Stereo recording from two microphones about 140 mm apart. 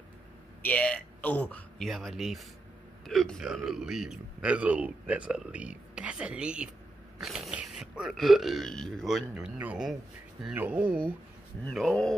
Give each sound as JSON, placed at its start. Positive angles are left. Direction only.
{"t": 0.6, "sound": "speech", "side_deg": 10}
{"t": 11.7, "sound": "speech", "side_deg": 0}